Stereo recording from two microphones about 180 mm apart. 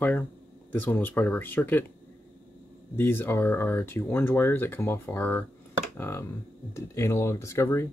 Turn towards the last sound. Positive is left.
turn(degrees=15)  # may be behind; listen again after turning